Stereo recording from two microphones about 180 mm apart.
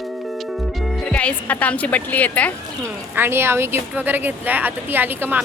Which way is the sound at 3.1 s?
10° right (ahead or behind).